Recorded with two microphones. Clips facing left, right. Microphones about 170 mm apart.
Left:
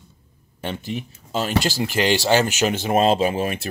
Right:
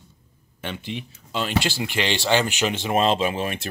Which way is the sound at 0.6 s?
40° left (ahead or behind).